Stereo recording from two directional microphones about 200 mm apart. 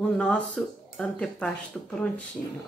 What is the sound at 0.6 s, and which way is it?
Speech, centre (ahead or behind).